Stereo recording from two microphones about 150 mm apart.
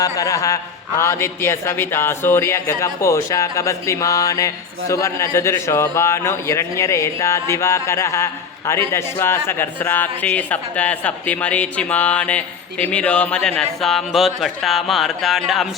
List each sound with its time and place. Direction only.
0.0 s a man's voice: 20° left (ahead or behind); by 15.7 s centre (ahead or behind)